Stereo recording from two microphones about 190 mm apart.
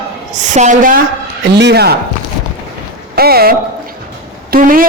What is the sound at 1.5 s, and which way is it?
Speech, 60° right (ahead or behind).